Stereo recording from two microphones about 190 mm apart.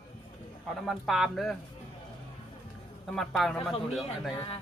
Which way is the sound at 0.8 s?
Centre (ahead or behind).